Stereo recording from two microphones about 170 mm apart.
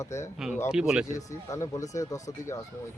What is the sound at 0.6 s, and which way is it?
Speech, 5° right (ahead or behind).